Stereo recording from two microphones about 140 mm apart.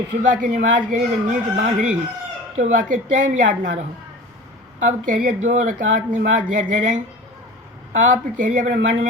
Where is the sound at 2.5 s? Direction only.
65° right (ahead or behind).